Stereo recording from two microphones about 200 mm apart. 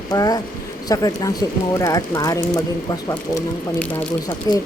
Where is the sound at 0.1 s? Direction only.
20° left (ahead or behind).